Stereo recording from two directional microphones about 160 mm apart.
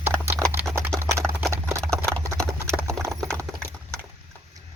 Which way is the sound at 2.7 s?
5° left (ahead or behind).